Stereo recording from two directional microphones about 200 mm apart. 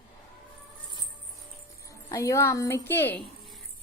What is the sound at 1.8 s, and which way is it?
A woman's voice, 15° left (ahead or behind).